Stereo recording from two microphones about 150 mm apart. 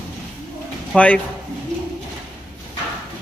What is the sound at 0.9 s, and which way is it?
Speech, 10° left (ahead or behind).